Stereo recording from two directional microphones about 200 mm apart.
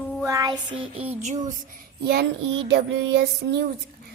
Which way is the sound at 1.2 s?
35° right (ahead or behind).